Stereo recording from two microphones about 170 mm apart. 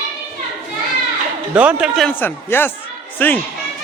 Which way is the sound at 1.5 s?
10° right (ahead or behind).